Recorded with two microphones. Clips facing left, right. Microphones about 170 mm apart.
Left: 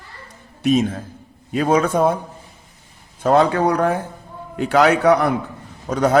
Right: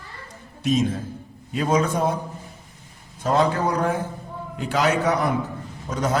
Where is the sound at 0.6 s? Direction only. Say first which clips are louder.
Left 4 dB; 60° left (ahead or behind).